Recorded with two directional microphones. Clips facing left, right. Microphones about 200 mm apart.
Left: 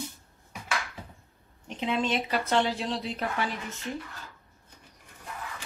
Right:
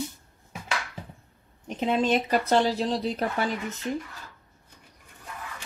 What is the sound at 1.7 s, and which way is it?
A woman's voice, 45° right (ahead or behind).